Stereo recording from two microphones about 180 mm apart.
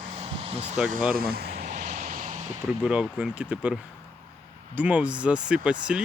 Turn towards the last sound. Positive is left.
turn(degrees=-5)  # may be behind; listen again after turning